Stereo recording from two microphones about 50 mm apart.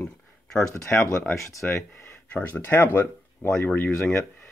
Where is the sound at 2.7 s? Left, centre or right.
Left.